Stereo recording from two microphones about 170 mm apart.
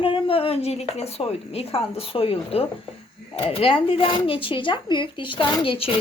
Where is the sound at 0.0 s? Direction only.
30° left (ahead or behind).